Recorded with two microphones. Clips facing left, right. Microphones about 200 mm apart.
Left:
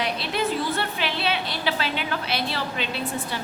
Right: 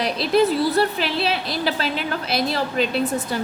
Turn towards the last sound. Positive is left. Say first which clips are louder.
# right 7 dB
turn(degrees=-40)  # may be behind; listen again after turning